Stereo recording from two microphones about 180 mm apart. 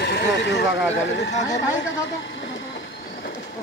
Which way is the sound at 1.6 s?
90° left.